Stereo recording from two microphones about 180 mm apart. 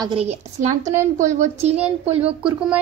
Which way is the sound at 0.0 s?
35° right (ahead or behind).